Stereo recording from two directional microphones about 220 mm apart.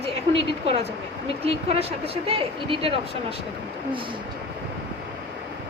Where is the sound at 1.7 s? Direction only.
25° right (ahead or behind).